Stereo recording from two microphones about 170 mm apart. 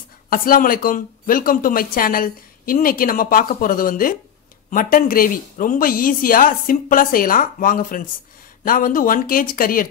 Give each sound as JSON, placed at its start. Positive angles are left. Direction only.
{"t": 0.3, "sound": "speech", "side_deg": 55}